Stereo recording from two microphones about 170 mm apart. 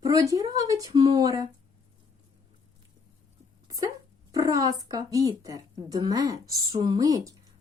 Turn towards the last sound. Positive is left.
turn(degrees=-20)  # may be behind; listen again after turning